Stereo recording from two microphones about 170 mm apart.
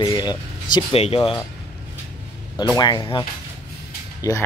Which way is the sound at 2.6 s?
25° left (ahead or behind).